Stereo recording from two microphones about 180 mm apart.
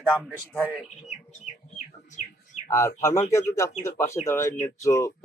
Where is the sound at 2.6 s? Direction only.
15° left (ahead or behind).